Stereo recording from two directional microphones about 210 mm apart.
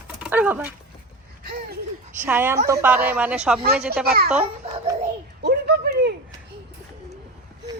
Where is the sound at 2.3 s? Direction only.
10° right (ahead or behind).